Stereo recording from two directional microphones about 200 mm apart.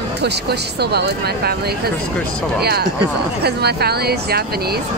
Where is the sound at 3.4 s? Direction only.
55° right (ahead or behind).